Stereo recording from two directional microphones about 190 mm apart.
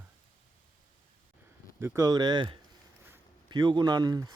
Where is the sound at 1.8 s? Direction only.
20° right (ahead or behind).